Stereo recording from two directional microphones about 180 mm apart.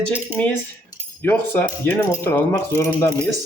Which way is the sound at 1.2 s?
10° left (ahead or behind).